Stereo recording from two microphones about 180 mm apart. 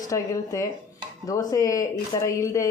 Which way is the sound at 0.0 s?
20° left (ahead or behind).